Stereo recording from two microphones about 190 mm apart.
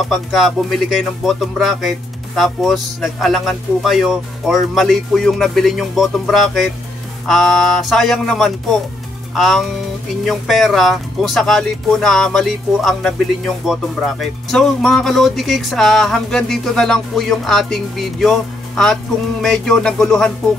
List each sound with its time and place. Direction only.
0.1 s speech: centre (ahead or behind)